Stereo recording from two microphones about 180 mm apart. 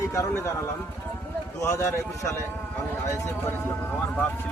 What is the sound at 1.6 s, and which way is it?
Speech, 15° left (ahead or behind).